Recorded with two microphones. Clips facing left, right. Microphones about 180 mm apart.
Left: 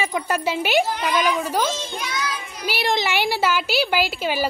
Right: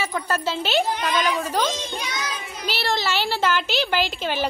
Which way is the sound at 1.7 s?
20° right (ahead or behind).